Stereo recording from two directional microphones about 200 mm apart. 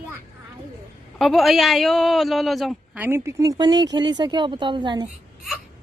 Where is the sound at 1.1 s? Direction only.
Centre (ahead or behind); by 5.0 s 25° right (ahead or behind).